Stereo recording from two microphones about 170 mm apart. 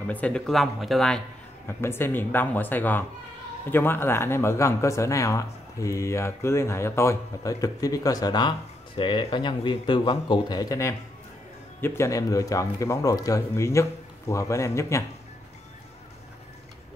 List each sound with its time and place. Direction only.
0.0 s speech: 10° left (ahead or behind)
1.7 s speech: 15° left (ahead or behind)